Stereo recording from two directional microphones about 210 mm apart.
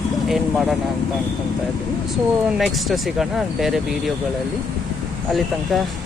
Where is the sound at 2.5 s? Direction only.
Centre (ahead or behind).